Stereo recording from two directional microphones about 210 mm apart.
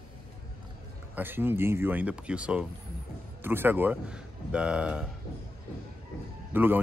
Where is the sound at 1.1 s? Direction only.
10° right (ahead or behind).